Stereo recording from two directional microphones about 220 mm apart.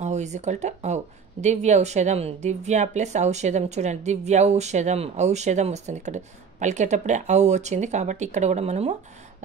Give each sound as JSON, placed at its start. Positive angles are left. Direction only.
{"t": 0.0, "sound": "speech", "side_deg": -30}